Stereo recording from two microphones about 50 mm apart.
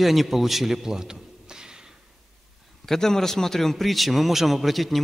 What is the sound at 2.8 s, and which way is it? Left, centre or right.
A man's voice, centre.